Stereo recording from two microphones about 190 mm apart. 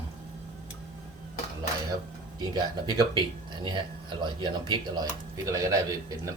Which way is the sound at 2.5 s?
20° right (ahead or behind).